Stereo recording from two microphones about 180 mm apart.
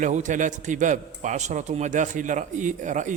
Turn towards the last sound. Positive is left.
turn(degrees=-45)  # may be behind; listen again after turning